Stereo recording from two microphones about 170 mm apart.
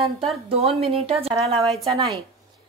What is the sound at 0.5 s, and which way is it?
Speech, 35° right (ahead or behind).